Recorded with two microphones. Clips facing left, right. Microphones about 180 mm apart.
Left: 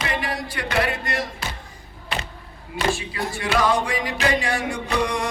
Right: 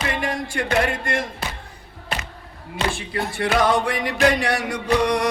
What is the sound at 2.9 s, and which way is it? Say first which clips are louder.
Music: right 1 dB; 55° right (ahead or behind).